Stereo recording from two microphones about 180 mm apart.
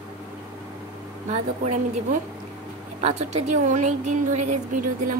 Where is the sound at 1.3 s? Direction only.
45° right (ahead or behind).